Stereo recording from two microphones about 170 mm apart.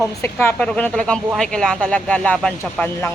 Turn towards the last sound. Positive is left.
turn(degrees=10)  # may be behind; listen again after turning